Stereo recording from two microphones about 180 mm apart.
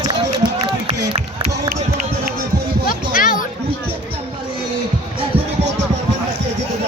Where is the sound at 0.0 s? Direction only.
20° right (ahead or behind).